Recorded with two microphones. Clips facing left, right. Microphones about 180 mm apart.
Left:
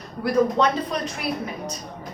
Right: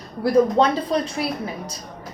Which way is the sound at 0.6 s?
30° right (ahead or behind).